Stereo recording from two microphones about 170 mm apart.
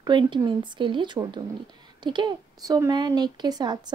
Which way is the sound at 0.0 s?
25° right (ahead or behind).